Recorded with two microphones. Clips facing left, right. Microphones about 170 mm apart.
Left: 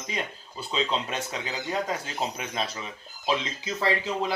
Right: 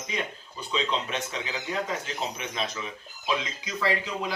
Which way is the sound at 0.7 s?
35° left (ahead or behind).